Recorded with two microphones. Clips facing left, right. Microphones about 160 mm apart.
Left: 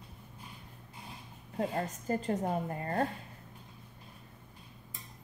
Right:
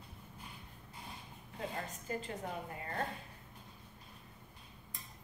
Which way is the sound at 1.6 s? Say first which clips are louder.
Left 9 dB; 40° left (ahead or behind).